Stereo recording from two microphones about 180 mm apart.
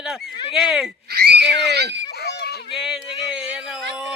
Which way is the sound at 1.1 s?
65° right (ahead or behind).